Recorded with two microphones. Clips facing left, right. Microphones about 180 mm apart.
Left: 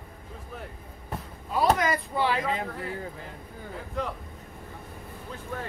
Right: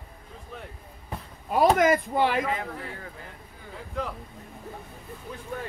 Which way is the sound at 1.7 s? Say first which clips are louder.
Right 6 dB; 50° right (ahead or behind).